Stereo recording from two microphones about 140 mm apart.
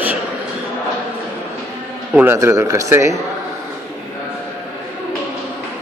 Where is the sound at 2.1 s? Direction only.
15° right (ahead or behind).